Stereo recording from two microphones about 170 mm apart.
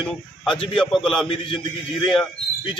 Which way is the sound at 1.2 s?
30° left (ahead or behind).